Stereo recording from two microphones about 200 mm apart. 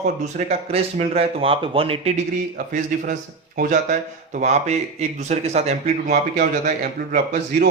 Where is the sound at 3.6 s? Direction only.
40° right (ahead or behind).